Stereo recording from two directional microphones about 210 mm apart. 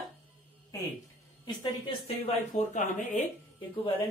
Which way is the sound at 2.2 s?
30° left (ahead or behind).